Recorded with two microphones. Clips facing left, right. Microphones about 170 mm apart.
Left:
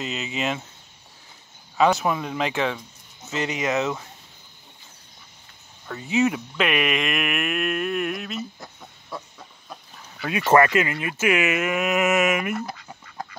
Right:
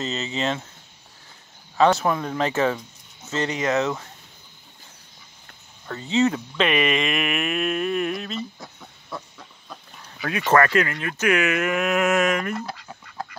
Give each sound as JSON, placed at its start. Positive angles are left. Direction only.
{"t": 0.0, "sound": "speech", "side_deg": 15}
{"t": 1.8, "sound": "speech", "side_deg": 0}
{"t": 3.3, "sound": "speech", "side_deg": 20}
{"t": 5.9, "sound": "speech", "side_deg": 15}
{"t": 6.5, "sound": "a sound", "side_deg": 5}
{"t": 10.4, "sound": "speech", "side_deg": 10}